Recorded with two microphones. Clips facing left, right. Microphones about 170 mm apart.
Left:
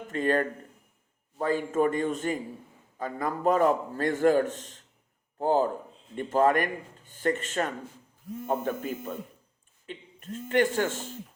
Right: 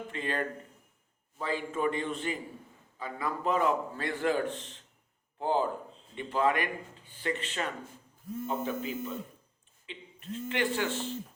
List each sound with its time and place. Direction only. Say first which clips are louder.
0.1 s a man's voice: left 9 dB; 45° left (ahead or behind)